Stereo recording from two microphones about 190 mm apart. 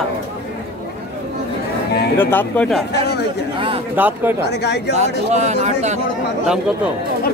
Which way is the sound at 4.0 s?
10° right (ahead or behind).